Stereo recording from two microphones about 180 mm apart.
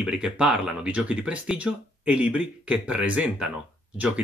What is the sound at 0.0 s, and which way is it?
Speech, 5° right (ahead or behind).